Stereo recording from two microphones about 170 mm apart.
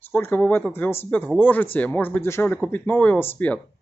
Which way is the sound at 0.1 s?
10° left (ahead or behind).